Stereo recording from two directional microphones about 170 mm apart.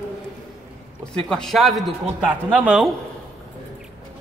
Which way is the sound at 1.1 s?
5° left (ahead or behind).